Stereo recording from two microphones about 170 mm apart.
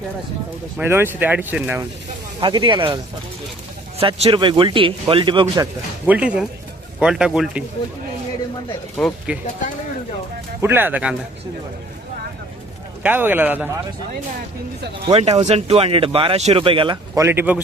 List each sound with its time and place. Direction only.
0.8 s speech: 15° right (ahead or behind)
2.4 s speech: 30° right (ahead or behind)
6.1 s a man's voice: 5° right (ahead or behind)
9.0 s a man's voice: 5° left (ahead or behind)
10.6 s speech: 10° right (ahead or behind)
13.0 s speech: 10° right (ahead or behind)
15.0 s speech: 35° right (ahead or behind)
17.2 s speech: 10° right (ahead or behind)